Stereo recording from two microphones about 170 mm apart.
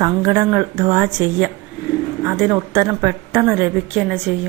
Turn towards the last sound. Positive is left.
turn(degrees=-5)  # may be behind; listen again after turning